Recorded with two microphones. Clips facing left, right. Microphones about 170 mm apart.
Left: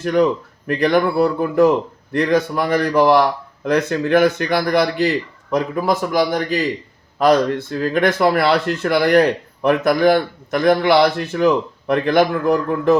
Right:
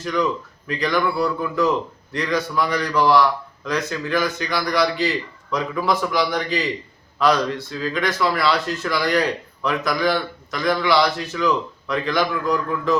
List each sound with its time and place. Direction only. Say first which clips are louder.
0.0 s a man's voice: left 6 dB; 55° left (ahead or behind)